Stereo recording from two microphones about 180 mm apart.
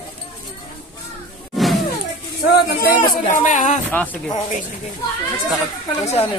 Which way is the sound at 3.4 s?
45° left (ahead or behind).